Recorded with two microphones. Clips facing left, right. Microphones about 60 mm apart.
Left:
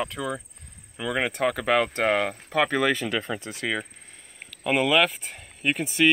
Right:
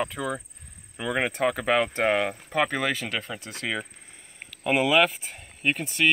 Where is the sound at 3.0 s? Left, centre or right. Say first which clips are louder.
Left 4 dB; left.